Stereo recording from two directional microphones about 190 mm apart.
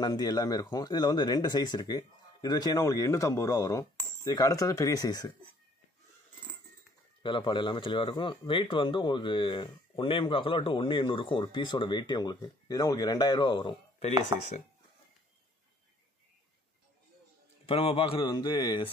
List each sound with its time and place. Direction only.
0.0 s speech: 20° left (ahead or behind)
7.2 s speech: 25° left (ahead or behind)
17.6 s speech: 30° left (ahead or behind)